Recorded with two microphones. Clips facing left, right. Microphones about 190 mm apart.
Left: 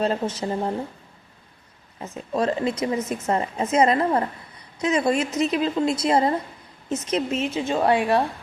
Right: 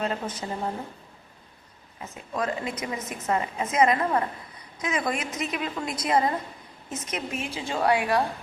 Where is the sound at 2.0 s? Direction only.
30° left (ahead or behind).